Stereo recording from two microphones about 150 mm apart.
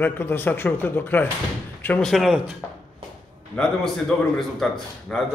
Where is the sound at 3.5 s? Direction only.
Centre (ahead or behind).